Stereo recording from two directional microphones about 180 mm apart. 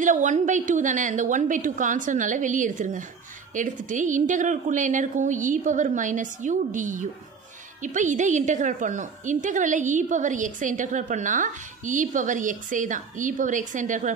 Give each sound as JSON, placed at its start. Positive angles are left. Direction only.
{"t": 0.0, "sound": "a woman's voice", "side_deg": -45}